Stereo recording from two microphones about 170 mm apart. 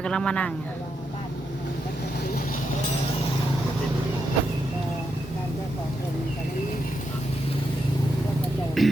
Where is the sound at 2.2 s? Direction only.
65° left (ahead or behind).